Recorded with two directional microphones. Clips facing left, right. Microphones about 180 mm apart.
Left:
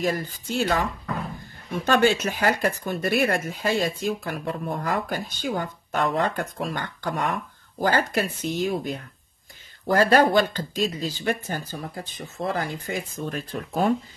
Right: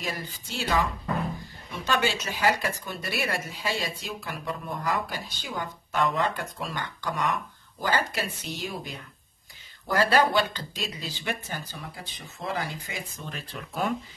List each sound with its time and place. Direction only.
0.0 s speech: 50° left (ahead or behind)